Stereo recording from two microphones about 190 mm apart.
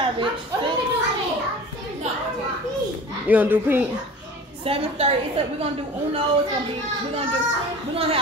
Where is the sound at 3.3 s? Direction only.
10° right (ahead or behind).